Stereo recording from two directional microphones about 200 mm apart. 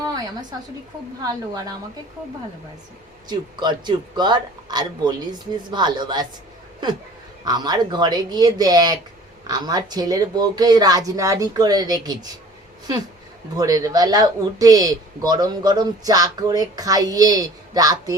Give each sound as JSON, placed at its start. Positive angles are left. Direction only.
{"t": 1.2, "sound": "a woman's voice", "side_deg": -20}
{"t": 3.2, "sound": "speech", "side_deg": -20}
{"t": 7.4, "sound": "speech", "side_deg": -20}
{"t": 13.6, "sound": "speech", "side_deg": -20}